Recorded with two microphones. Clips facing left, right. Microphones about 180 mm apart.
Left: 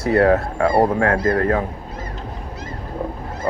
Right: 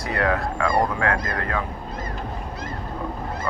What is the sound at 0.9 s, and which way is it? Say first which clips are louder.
Speech: left 6 dB; 45° left (ahead or behind).